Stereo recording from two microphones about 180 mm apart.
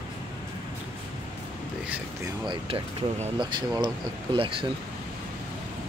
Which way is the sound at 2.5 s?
30° right (ahead or behind).